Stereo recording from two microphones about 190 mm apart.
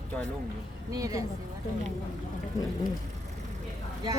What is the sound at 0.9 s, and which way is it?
Speech, 20° right (ahead or behind).